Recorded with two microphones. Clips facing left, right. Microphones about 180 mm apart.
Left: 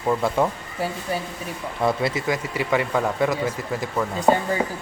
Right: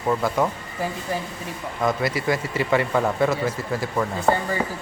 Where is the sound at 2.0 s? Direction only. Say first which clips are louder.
Even; 25° left (ahead or behind).